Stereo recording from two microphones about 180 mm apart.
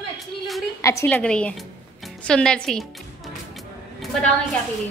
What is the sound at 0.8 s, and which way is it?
A woman's voice, 15° left (ahead or behind).